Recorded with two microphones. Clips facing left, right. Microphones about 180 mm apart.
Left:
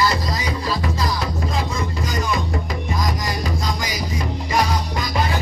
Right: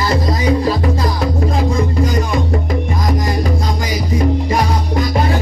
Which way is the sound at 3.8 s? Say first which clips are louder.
Right 8 dB; 55° right (ahead or behind).